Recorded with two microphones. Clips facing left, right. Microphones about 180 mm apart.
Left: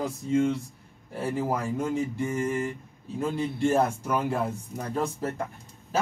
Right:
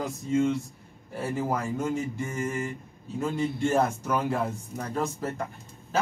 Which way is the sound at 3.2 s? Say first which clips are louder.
Even; 5° left (ahead or behind).